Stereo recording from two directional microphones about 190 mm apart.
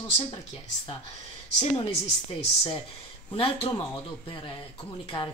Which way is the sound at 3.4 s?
30° left (ahead or behind).